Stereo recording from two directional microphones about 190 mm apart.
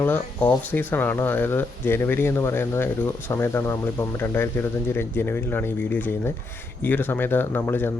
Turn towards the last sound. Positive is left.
turn(degrees=10)  # may be behind; listen again after turning